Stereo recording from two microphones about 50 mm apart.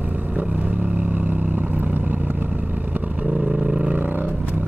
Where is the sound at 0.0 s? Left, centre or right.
Right.